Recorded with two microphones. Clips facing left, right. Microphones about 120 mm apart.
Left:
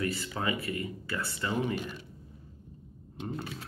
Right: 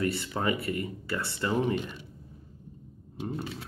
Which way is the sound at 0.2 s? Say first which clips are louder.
Right 3 dB; 25° right (ahead or behind).